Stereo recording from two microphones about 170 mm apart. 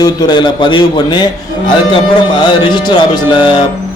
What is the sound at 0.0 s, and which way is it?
A man's voice, 25° left (ahead or behind).